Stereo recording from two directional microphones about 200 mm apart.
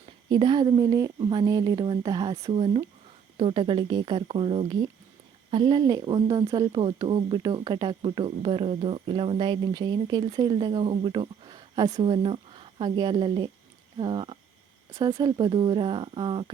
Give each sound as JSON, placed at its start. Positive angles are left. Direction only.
{"t": 0.3, "sound": "speech", "side_deg": -20}